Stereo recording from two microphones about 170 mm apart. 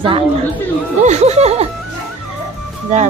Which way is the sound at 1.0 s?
40° right (ahead or behind).